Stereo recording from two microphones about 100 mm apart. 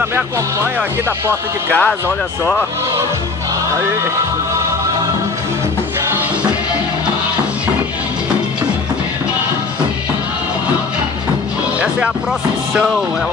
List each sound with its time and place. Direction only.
0.1 s speech: 25° right (ahead or behind)